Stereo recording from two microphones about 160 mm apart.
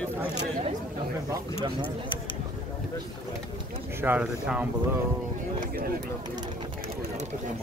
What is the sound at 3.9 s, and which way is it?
Speech, 10° right (ahead or behind).